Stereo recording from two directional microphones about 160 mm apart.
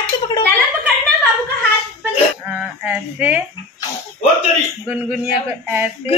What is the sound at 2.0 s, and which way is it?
Speech, 10° right (ahead or behind).